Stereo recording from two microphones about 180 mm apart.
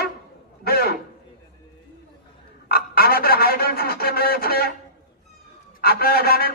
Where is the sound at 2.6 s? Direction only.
55° left (ahead or behind).